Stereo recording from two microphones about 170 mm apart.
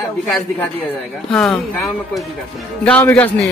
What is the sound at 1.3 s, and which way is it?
Speech, 5° left (ahead or behind).